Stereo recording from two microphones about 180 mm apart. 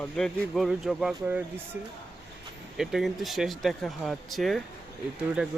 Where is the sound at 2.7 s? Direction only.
Centre (ahead or behind).